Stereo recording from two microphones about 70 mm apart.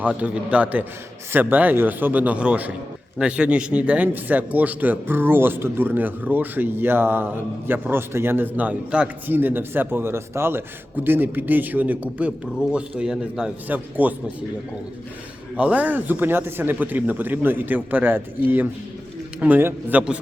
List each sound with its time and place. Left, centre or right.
0.0 s a man's voice: centre
9.2 s a man's voice: right
12.7 s speech: centre
13.7 s a man's voice: right
15.5 s a man's voice: centre